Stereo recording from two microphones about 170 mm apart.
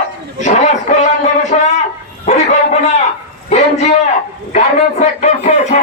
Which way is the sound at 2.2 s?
40° left (ahead or behind).